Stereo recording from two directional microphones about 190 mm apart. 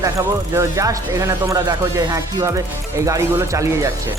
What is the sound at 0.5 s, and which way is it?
Speech, 15° right (ahead or behind).